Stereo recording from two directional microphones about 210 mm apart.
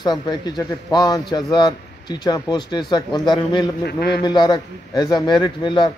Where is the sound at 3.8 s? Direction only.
50° left (ahead or behind).